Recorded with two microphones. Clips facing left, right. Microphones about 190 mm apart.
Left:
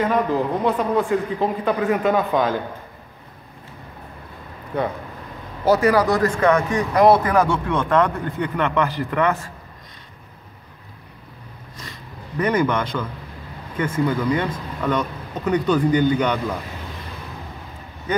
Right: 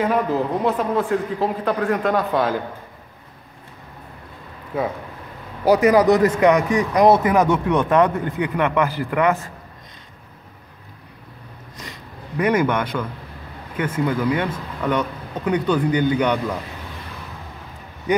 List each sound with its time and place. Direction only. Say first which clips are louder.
0.0 s a man's voice: even; 5° right (ahead or behind)
4.7 s a man's voice: even; 5° right (ahead or behind)
5.7 s speech: right 3 dB; 20° right (ahead or behind)
11.7 s a sound: right 1 dB; 15° right (ahead or behind)
13.7 s speech: even; 10° right (ahead or behind)
18.1 s a man's voice: right 2 dB; 15° right (ahead or behind)